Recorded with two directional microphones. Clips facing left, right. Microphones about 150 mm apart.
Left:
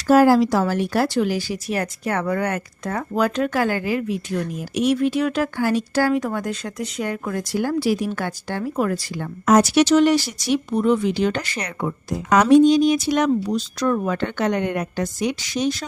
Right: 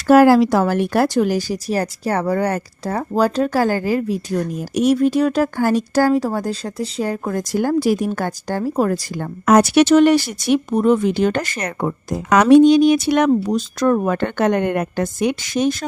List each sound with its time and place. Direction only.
0.1 s speech: 65° right (ahead or behind); by 9.2 s 40° right (ahead or behind)
9.5 s speech: 60° right (ahead or behind)
12.3 s speech: 70° right (ahead or behind); by 15.9 s 50° right (ahead or behind)